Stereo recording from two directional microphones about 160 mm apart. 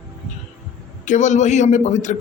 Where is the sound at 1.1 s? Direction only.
50° left (ahead or behind).